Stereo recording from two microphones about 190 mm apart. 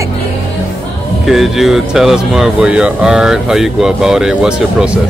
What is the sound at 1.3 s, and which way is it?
Speech, centre (ahead or behind).